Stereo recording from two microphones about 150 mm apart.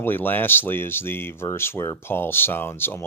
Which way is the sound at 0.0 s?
15° left (ahead or behind).